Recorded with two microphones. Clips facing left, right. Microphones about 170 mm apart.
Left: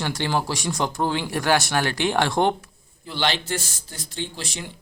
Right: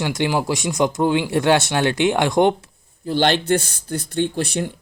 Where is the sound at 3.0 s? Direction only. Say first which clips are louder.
Right 7 dB; 45° right (ahead or behind).